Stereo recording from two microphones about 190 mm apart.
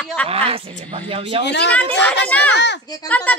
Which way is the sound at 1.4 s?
65° left (ahead or behind).